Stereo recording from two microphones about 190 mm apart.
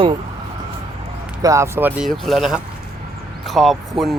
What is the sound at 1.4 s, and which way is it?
Speech, 15° right (ahead or behind).